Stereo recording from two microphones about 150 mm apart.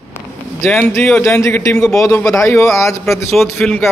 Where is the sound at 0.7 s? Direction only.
15° left (ahead or behind).